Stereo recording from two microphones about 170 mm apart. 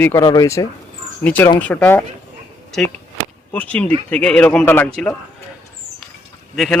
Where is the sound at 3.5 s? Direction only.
10° left (ahead or behind).